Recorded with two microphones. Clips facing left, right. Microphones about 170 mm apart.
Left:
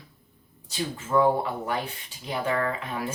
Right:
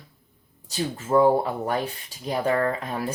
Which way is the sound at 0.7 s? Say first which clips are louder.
Right 4 dB; 40° right (ahead or behind).